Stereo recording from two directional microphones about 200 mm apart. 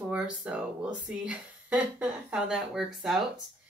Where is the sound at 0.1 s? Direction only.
5° right (ahead or behind).